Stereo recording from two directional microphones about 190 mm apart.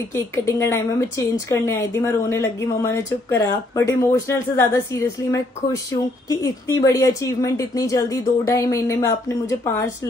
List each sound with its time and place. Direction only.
0.1 s speech: 15° left (ahead or behind)